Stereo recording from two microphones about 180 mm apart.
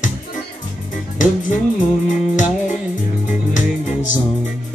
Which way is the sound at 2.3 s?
45° left (ahead or behind).